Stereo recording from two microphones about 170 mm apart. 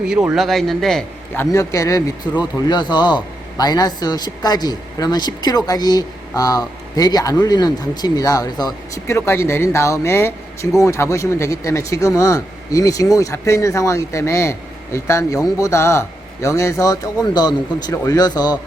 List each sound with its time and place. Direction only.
0.1 s a man's voice: 5° right (ahead or behind)
1.4 s a man's voice: 20° left (ahead or behind)